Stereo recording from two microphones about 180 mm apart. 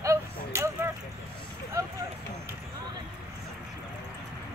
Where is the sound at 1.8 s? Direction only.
20° right (ahead or behind).